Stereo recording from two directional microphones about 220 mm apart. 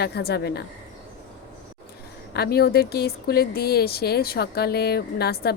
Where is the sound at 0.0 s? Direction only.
45° left (ahead or behind).